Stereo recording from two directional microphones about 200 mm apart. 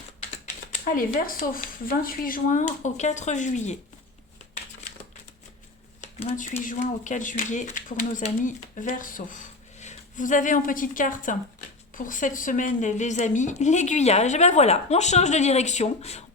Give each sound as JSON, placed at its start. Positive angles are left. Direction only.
{"t": 0.4, "sound": "speech", "side_deg": 45}
{"t": 6.0, "sound": "speech", "side_deg": 35}